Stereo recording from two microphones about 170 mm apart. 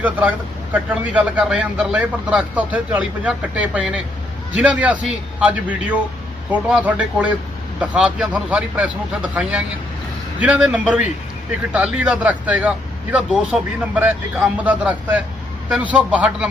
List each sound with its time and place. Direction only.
0.0 s a man's voice: 10° right (ahead or behind)